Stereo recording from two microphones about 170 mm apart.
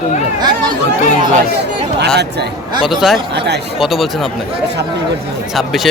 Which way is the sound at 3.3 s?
85° right.